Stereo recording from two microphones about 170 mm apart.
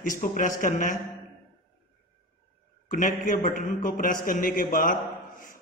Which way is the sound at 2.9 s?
50° left (ahead or behind).